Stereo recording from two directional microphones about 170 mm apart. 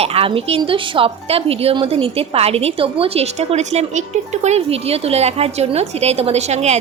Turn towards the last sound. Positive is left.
turn(degrees=-40)  # may be behind; listen again after turning